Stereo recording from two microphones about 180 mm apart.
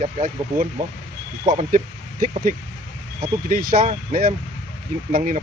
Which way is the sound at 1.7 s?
45° right (ahead or behind).